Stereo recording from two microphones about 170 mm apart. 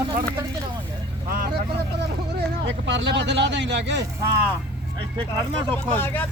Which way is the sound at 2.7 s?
90° right.